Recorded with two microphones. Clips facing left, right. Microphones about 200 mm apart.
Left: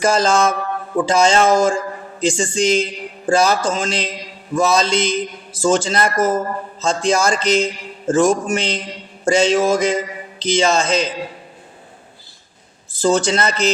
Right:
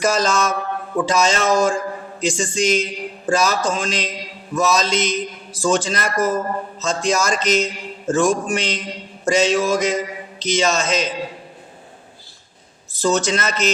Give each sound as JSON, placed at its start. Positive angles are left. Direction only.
{"t": 0.0, "sound": "a man's voice", "side_deg": 30}
{"t": 12.9, "sound": "speech", "side_deg": 30}